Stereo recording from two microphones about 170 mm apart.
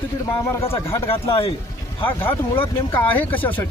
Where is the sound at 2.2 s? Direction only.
15° left (ahead or behind).